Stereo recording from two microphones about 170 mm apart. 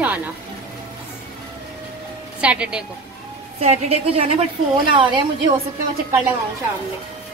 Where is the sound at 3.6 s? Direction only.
35° right (ahead or behind).